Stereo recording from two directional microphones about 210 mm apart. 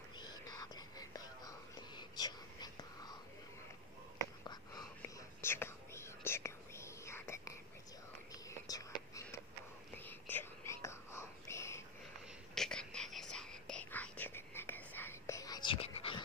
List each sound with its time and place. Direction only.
0.5 s whispering: 20° left (ahead or behind)
4.5 s whispering: 15° left (ahead or behind)